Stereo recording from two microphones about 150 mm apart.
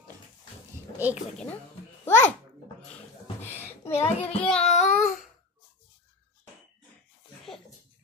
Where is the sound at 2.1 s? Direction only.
15° left (ahead or behind).